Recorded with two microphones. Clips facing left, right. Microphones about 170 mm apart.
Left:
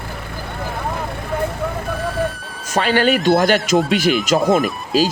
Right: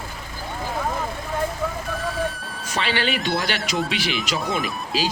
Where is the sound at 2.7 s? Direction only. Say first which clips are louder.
Left 8 dB; 45° left (ahead or behind).